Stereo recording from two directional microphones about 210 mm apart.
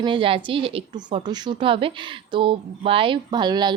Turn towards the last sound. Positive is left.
turn(degrees=-20)  # may be behind; listen again after turning